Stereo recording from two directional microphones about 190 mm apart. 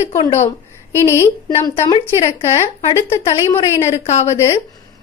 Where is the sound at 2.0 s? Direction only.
30° left (ahead or behind).